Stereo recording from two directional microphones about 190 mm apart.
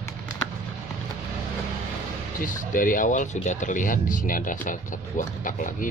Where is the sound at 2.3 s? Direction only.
45° left (ahead or behind).